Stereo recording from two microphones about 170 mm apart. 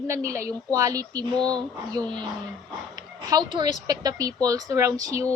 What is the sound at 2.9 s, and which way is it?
Speech, 20° right (ahead or behind).